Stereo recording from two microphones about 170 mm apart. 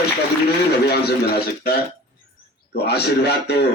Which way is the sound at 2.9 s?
75° left (ahead or behind).